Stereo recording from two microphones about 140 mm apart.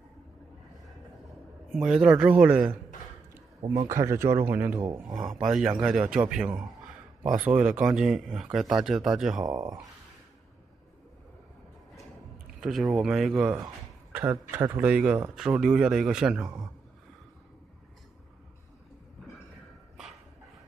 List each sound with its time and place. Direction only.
1.7 s speech: 5° right (ahead or behind)
3.3 s a sound: 20° right (ahead or behind)
3.9 s speech: 20° right (ahead or behind); by 9.5 s 5° right (ahead or behind)
9.5 s speech: 25° right (ahead or behind)
12.5 s speech: centre (ahead or behind)